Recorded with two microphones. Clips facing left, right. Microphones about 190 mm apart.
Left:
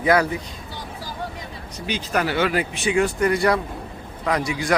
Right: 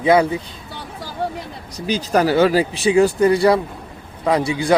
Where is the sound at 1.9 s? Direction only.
35° right (ahead or behind).